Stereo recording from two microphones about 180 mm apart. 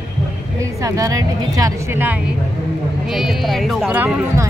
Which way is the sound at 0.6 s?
15° right (ahead or behind).